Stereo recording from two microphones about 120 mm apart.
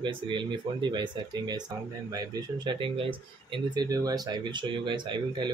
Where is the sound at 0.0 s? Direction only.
40° right (ahead or behind).